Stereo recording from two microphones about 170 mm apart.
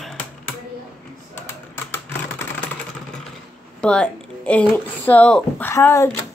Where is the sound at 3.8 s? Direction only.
5° left (ahead or behind).